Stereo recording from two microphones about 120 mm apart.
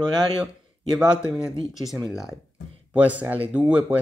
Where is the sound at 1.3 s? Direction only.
Centre (ahead or behind).